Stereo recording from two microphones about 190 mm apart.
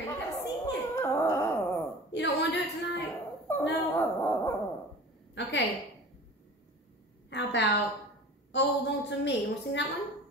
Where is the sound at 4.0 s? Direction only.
10° left (ahead or behind).